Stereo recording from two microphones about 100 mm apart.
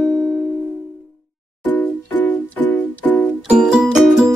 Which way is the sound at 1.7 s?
20° left (ahead or behind).